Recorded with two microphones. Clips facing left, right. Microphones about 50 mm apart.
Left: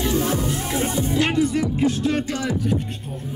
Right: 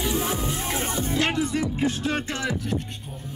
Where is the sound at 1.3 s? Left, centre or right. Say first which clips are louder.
Left 5 dB; right.